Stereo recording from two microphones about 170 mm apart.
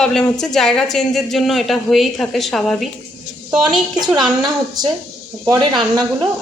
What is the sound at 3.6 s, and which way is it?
Speech, 25° right (ahead or behind).